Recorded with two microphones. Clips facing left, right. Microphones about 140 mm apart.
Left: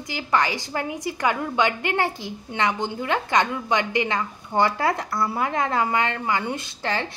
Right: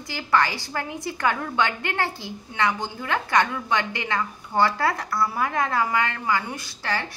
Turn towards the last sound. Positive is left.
turn(degrees=20)  # may be behind; listen again after turning